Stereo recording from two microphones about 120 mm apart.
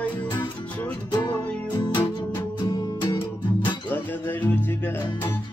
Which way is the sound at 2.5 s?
30° left (ahead or behind).